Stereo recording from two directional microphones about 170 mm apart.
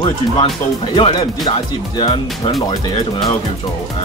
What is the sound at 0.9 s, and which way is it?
Speech, 30° left (ahead or behind).